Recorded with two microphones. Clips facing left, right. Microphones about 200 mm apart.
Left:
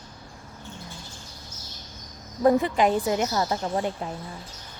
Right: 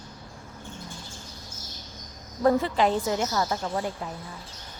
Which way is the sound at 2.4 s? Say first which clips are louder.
Left 2 dB; 15° left (ahead or behind).